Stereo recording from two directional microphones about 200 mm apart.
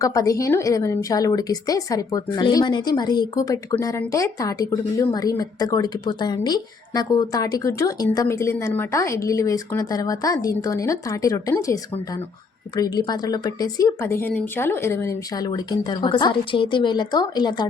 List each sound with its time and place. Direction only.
0.0 s a woman's voice: 15° left (ahead or behind)